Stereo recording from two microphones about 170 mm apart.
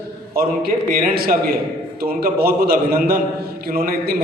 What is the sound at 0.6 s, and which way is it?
A man's voice, 60° right (ahead or behind).